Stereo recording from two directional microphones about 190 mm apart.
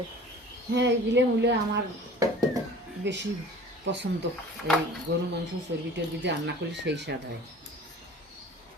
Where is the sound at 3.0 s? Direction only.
70° right (ahead or behind).